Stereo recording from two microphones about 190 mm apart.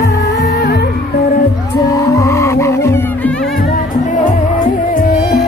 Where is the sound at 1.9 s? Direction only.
15° left (ahead or behind).